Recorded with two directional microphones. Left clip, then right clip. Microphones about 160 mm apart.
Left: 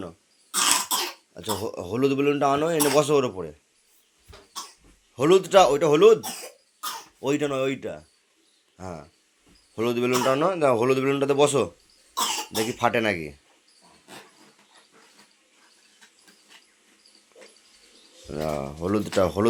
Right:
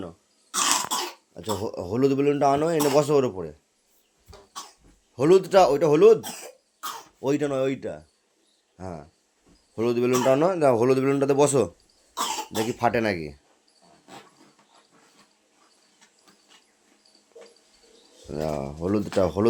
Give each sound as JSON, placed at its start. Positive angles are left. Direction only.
{"t": 0.0, "sound": "cough", "side_deg": 0}
{"t": 1.6, "sound": "a man's voice", "side_deg": -25}
{"t": 5.1, "sound": "speech", "side_deg": -15}
{"t": 7.2, "sound": "speech", "side_deg": -20}
{"t": 10.2, "sound": "a man's voice", "side_deg": -30}
{"t": 12.1, "sound": "cough", "side_deg": 10}
{"t": 12.5, "sound": "speech", "side_deg": -15}
{"t": 18.3, "sound": "speech", "side_deg": -5}